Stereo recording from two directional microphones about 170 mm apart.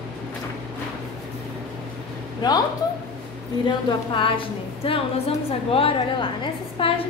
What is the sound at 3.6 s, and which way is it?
A woman's voice, 30° left (ahead or behind).